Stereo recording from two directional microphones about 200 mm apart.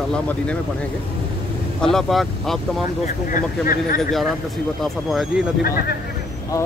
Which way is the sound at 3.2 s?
45° left (ahead or behind).